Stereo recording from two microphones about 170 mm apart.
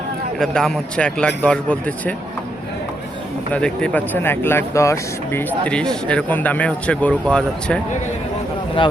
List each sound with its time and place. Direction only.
0.3 s a man's voice: 5° left (ahead or behind)
3.5 s speech: 5° left (ahead or behind)
8.8 s a man's voice: 30° left (ahead or behind)